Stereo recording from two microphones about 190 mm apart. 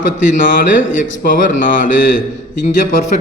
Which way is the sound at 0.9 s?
45° left (ahead or behind).